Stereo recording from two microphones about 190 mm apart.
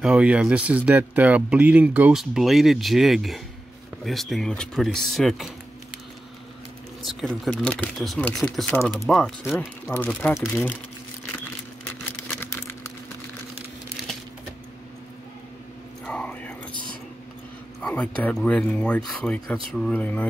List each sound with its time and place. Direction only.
0.0 s speech: 5° right (ahead or behind)
7.1 s speech: centre (ahead or behind)
9.0 s speech: centre (ahead or behind)
9.4 s speech: 10° left (ahead or behind)
12.2 s a sound: 10° left (ahead or behind)
16.1 s whispering: 5° left (ahead or behind)
17.7 s speech: 5° left (ahead or behind)